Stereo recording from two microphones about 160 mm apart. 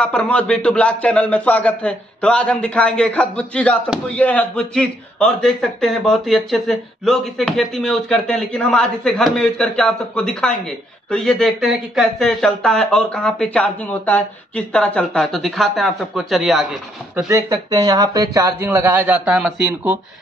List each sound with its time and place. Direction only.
0.0 s a man's voice: 10° left (ahead or behind)
17.3 s speech: 20° right (ahead or behind)